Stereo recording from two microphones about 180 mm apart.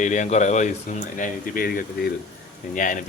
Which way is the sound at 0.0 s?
45° left (ahead or behind).